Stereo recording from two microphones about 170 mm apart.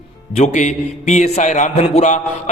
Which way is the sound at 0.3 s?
45° left (ahead or behind).